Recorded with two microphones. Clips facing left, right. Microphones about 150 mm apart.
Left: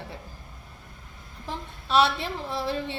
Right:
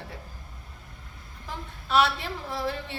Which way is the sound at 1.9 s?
25° left (ahead or behind).